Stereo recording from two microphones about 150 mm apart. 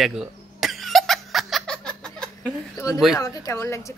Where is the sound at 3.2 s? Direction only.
20° left (ahead or behind).